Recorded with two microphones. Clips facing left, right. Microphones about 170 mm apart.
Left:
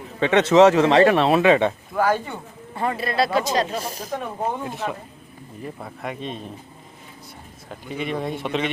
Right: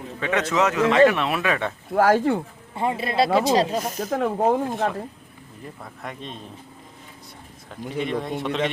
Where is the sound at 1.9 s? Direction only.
90° right.